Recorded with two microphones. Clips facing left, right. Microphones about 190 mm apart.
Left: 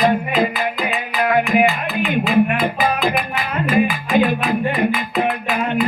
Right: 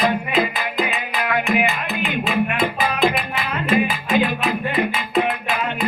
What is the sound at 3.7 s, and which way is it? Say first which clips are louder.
Music: left 2 dB; 20° right (ahead or behind).